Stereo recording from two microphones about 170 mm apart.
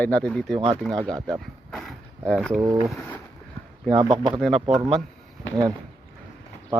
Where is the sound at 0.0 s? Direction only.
10° left (ahead or behind).